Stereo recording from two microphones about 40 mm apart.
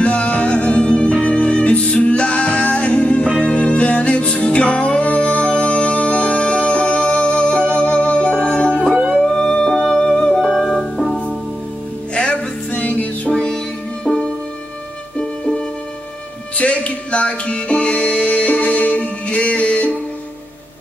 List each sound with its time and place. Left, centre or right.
0.0 s music: left; by 10.4 s centre
10.4 s music: centre
12.1 s music: left
12.7 s music: left
13.3 s music: left
15.1 s music: left